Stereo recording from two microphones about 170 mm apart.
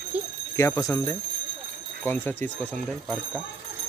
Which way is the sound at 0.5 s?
20° left (ahead or behind).